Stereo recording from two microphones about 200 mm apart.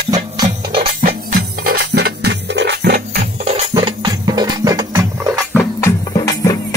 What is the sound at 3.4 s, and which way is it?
Music, 35° right (ahead or behind).